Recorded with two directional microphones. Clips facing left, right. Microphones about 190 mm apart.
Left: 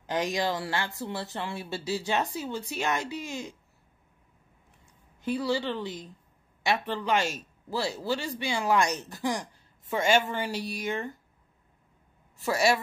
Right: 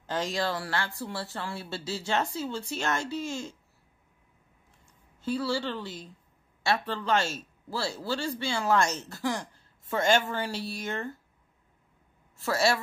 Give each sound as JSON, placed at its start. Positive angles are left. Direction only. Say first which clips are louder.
{"t": 0.0, "sound": "speech", "louder": "left 2 dB", "side_deg": 15}
{"t": 5.2, "sound": "speech", "louder": "left 1 dB", "side_deg": 15}
{"t": 12.4, "sound": "speech", "louder": "left 1 dB", "side_deg": 15}